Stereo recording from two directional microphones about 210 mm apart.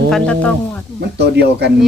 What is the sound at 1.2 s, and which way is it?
Speech, 55° right (ahead or behind).